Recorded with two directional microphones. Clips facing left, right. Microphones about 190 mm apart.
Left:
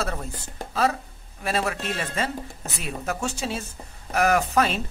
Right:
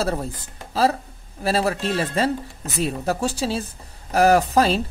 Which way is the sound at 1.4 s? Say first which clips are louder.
Right 5 dB; 35° right (ahead or behind).